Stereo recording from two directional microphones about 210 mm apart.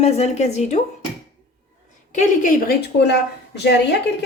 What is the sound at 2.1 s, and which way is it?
A woman's voice, 40° left (ahead or behind).